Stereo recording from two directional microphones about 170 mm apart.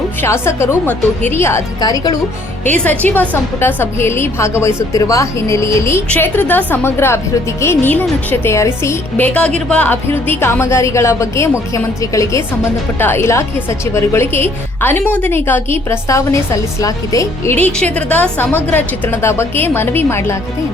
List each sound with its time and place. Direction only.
0.2 s a woman's voice: 15° left (ahead or behind)
2.6 s a woman's voice: 10° left (ahead or behind)